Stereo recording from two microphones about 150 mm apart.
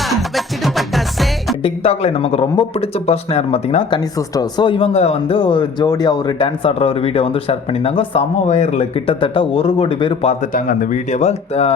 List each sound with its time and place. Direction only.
0.0 s music: centre (ahead or behind)
1.6 s speech: 40° left (ahead or behind)
10.4 s speech: 65° left (ahead or behind); by 11.7 s 45° left (ahead or behind)